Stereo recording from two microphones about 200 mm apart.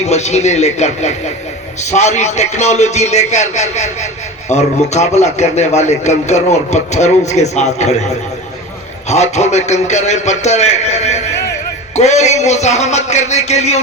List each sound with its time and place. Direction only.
0.0 s a man's voice: 35° left (ahead or behind)